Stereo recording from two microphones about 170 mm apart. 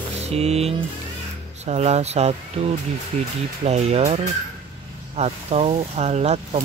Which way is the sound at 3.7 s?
40° right (ahead or behind).